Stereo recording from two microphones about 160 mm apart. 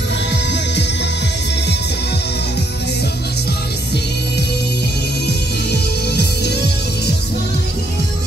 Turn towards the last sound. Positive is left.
turn(degrees=90)